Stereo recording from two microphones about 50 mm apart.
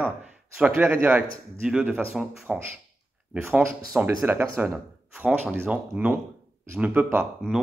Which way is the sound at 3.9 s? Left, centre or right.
Right.